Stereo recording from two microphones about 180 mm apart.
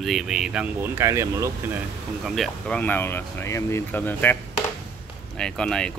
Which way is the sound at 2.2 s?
Centre (ahead or behind).